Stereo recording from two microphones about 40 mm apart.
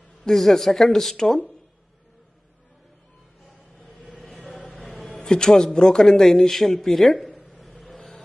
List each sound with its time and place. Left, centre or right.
0.2 s a man's voice: centre
3.7 s vehicle: centre
4.9 s a sound: centre
5.2 s a man's voice: centre
7.6 s vehicle: centre